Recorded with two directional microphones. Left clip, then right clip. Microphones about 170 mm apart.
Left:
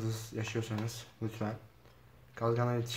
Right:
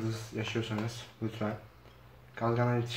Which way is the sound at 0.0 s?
45° left (ahead or behind).